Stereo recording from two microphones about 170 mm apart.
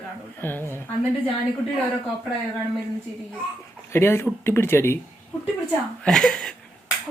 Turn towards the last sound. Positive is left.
turn(degrees=5)  # may be behind; listen again after turning